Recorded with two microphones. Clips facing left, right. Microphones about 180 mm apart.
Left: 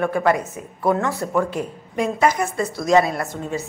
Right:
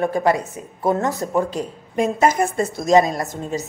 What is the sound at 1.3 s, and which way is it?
Speech, 25° right (ahead or behind).